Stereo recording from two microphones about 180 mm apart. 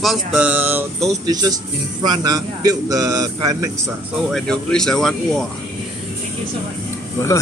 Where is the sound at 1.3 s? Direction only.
20° right (ahead or behind).